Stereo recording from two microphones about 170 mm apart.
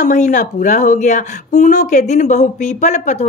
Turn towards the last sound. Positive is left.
turn(degrees=45)  # may be behind; listen again after turning